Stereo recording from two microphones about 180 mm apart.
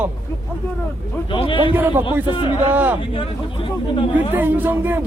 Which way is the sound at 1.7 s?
10° right (ahead or behind).